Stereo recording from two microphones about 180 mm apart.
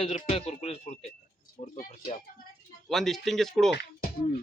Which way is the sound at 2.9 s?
Centre (ahead or behind).